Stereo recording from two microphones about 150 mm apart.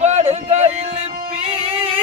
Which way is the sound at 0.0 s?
50° right (ahead or behind).